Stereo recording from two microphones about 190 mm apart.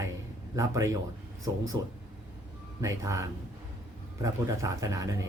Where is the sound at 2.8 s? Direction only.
15° right (ahead or behind).